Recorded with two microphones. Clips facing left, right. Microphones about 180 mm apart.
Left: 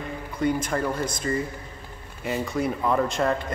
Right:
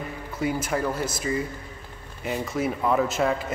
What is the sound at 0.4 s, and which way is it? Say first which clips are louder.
A man's voice: left 1 dB; 5° right (ahead or behind).